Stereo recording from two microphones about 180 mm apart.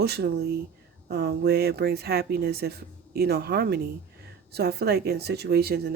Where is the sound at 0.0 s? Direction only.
65° right (ahead or behind).